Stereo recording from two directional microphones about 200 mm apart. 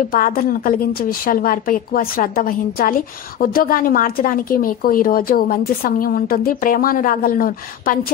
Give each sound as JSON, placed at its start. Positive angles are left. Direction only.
{"t": 0.1, "sound": "a woman's voice", "side_deg": 45}